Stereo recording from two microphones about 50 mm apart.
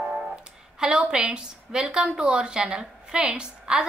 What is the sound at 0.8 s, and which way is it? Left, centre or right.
A woman's voice, centre.